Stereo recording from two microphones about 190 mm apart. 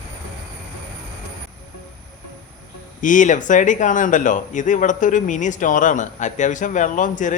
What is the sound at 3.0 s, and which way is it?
Speech, 40° left (ahead or behind).